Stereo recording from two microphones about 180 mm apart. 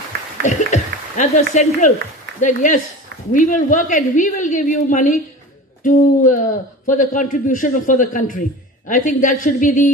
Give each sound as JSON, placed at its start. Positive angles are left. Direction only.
{"t": 0.4, "sound": "a man's voice", "side_deg": 40}